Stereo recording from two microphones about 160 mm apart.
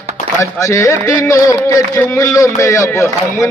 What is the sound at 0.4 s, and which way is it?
Speech, 20° left (ahead or behind).